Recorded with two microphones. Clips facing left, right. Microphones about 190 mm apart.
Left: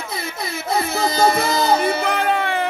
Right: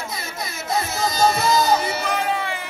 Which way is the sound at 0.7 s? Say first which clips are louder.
Left 3 dB; 60° left (ahead or behind).